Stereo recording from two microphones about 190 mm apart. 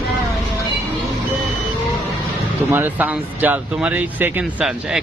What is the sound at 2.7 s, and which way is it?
Speech, 10° right (ahead or behind).